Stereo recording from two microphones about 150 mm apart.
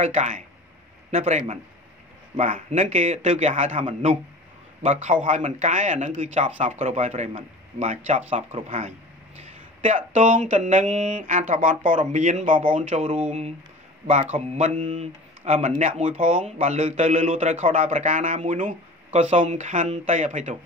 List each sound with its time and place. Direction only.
0.0 s speech: 50° right (ahead or behind)
2.3 s speech: 60° right (ahead or behind)
3.3 s a man's voice: 40° right (ahead or behind); by 12.6 s 55° right (ahead or behind)
12.9 s a man's voice: 40° right (ahead or behind)